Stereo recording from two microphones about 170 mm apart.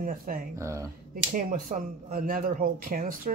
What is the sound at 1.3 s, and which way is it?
Speech, 55° right (ahead or behind).